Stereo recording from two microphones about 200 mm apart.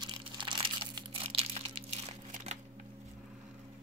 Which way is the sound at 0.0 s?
25° right (ahead or behind).